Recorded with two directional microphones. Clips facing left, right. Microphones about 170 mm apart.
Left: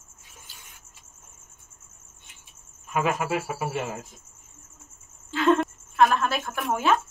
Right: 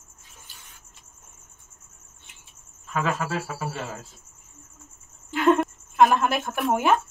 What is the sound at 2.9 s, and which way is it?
Speech, 15° left (ahead or behind).